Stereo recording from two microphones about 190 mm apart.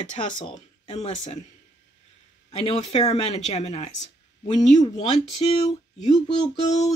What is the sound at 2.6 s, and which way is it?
Speech, 30° left (ahead or behind).